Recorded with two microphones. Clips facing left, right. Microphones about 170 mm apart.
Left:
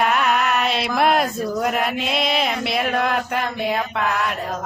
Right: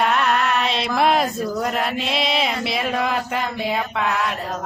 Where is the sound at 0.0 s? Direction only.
Centre (ahead or behind).